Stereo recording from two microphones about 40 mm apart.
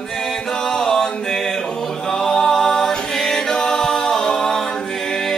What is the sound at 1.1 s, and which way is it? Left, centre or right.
Music, centre.